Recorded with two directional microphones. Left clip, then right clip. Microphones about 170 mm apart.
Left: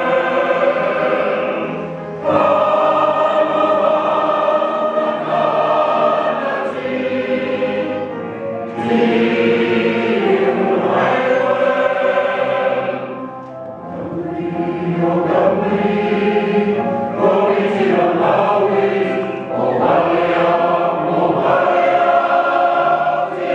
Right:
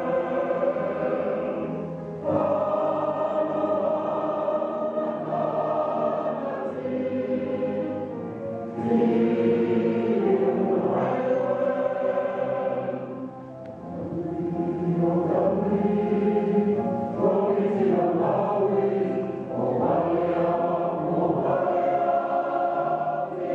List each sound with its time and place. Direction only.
0.0 s choir: 30° left (ahead or behind)
0.7 s music: 20° left (ahead or behind)
2.2 s choir: 35° left (ahead or behind)
5.6 s music: 20° left (ahead or behind)
5.9 s music: 35° left (ahead or behind)
9.0 s choir: 20° left (ahead or behind)
15.0 s chant: 30° left (ahead or behind)
17.2 s music: 35° left (ahead or behind)
17.5 s chant: 25° left (ahead or behind)
22.6 s music: 25° left (ahead or behind)